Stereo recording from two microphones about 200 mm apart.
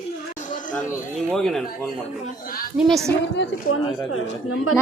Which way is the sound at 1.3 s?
Centre (ahead or behind).